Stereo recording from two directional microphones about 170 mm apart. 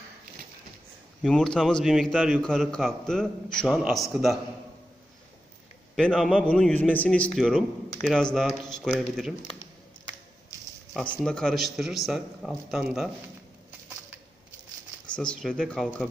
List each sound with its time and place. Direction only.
1.2 s a man's voice: 5° left (ahead or behind)
5.9 s a man's voice: 5° left (ahead or behind)
11.2 s a man's voice: 5° left (ahead or behind)
15.1 s a man's voice: 5° left (ahead or behind)